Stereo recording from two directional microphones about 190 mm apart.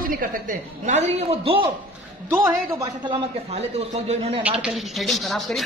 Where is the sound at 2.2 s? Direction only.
10° right (ahead or behind); by 4.4 s 35° right (ahead or behind).